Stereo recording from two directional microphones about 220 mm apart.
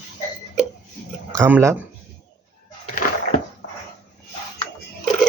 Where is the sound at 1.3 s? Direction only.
10° right (ahead or behind).